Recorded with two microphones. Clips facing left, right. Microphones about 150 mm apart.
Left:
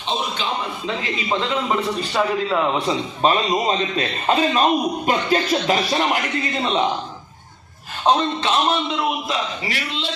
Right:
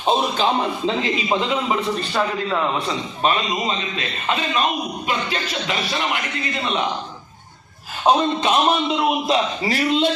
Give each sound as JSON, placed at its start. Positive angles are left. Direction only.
{"t": 0.4, "sound": "a man's voice", "side_deg": -40}
{"t": 1.3, "sound": "a man's voice", "side_deg": -5}
{"t": 2.8, "sound": "a man's voice", "side_deg": 35}
{"t": 8.0, "sound": "a man's voice", "side_deg": -15}
{"t": 9.6, "sound": "a man's voice", "side_deg": -45}